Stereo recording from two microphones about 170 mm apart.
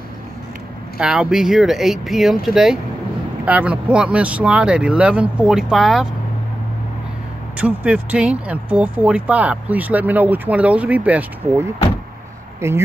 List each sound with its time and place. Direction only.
0.9 s speech: 5° right (ahead or behind)
7.5 s speech: 10° right (ahead or behind)